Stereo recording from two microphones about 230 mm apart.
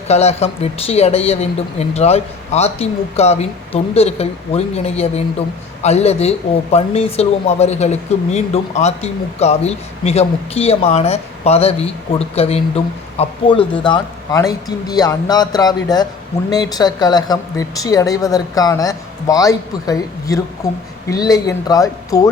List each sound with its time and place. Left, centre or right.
0.1 s a woman's voice: left